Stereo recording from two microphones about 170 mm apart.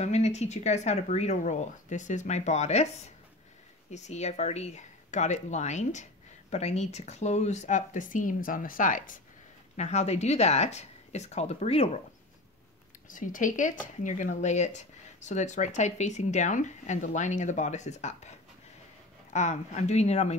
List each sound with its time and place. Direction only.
0.0 s speech: 40° left (ahead or behind)
3.9 s speech: 40° left (ahead or behind)
9.8 s speech: 40° left (ahead or behind)
13.1 s speech: 50° left (ahead or behind)
19.3 s speech: 45° left (ahead or behind)